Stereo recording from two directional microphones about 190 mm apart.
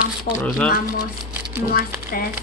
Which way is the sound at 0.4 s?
5° left (ahead or behind).